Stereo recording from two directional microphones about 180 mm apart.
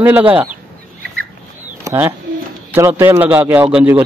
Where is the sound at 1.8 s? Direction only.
10° right (ahead or behind).